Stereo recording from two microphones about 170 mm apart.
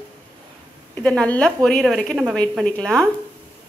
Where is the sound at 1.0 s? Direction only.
5° left (ahead or behind).